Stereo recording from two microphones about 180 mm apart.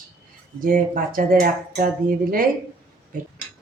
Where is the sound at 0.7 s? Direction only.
50° right (ahead or behind).